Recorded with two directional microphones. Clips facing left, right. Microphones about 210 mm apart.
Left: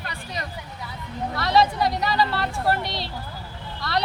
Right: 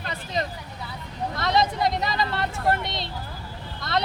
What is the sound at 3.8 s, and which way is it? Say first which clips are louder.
Vehicle: left 2 dB; 20° right (ahead or behind).